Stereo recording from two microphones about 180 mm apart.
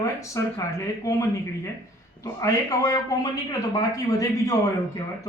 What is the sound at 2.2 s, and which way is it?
Speech, 20° left (ahead or behind).